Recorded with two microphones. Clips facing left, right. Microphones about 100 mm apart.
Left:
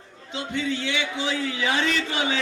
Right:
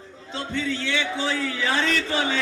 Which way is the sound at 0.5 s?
15° left (ahead or behind).